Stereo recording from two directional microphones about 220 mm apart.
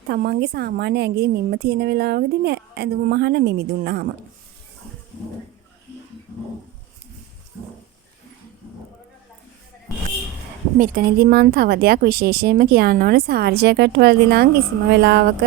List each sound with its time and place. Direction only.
0.1 s speech: 45° right (ahead or behind)
10.8 s speech: 40° right (ahead or behind)